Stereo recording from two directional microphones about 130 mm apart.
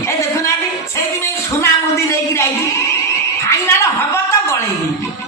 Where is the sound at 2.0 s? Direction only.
20° left (ahead or behind).